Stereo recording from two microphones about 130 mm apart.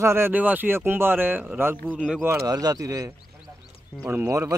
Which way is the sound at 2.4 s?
30° right (ahead or behind).